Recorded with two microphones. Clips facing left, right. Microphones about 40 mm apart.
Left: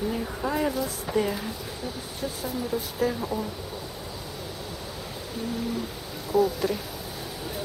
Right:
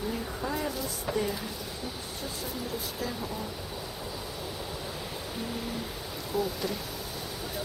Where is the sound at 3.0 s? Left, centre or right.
Centre.